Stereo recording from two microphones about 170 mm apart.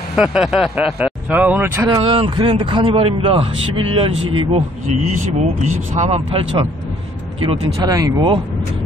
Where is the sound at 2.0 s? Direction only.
30° right (ahead or behind).